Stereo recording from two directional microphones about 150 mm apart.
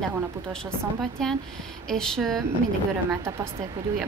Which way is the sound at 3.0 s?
20° right (ahead or behind).